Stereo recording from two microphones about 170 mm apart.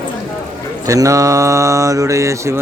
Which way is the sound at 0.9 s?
20° right (ahead or behind).